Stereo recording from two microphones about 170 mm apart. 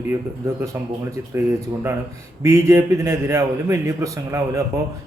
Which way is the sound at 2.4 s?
20° right (ahead or behind).